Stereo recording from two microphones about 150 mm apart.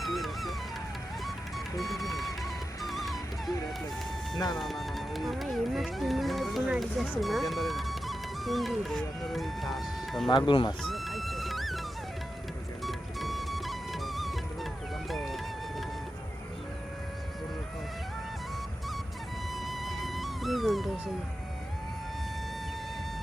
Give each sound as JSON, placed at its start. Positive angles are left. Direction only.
{"t": 0.0, "sound": "music", "side_deg": 0}
{"t": 2.8, "sound": "music", "side_deg": 0}
{"t": 4.5, "sound": "speech", "side_deg": 0}
{"t": 10.2, "sound": "speech", "side_deg": 30}
{"t": 10.8, "sound": "music", "side_deg": 0}
{"t": 12.8, "sound": "music", "side_deg": 0}
{"t": 19.6, "sound": "music", "side_deg": 0}